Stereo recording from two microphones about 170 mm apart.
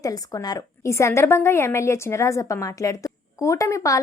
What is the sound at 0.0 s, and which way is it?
A woman's voice, 20° left (ahead or behind).